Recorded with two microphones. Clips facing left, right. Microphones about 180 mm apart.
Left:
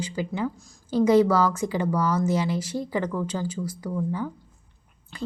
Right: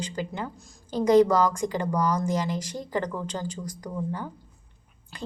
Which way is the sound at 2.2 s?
10° left (ahead or behind).